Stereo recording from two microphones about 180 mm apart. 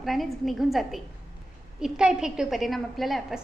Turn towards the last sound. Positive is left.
turn(degrees=0)  # may be behind; listen again after turning